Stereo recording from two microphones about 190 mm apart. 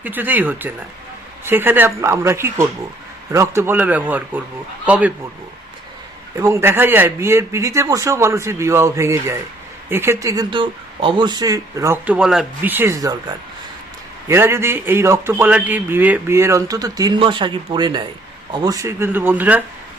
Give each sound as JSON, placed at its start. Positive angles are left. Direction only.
{"t": 0.0, "sound": "a man's voice", "side_deg": -10}
{"t": 6.4, "sound": "a man's voice", "side_deg": -15}